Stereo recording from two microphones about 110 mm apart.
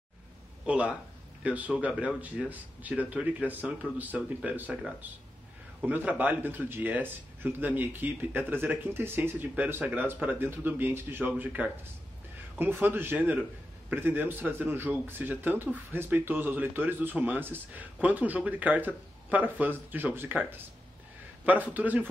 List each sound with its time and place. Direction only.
0.7 s speech: 10° right (ahead or behind)